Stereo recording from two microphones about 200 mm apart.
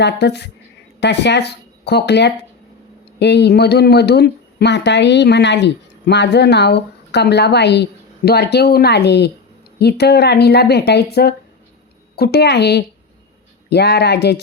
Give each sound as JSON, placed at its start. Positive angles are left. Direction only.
{"t": 0.0, "sound": "speech", "side_deg": 55}